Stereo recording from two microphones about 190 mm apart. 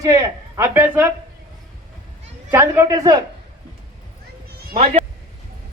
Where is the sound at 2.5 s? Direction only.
15° right (ahead or behind).